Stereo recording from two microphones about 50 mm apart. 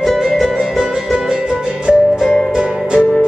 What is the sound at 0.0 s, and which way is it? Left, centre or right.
Music, centre.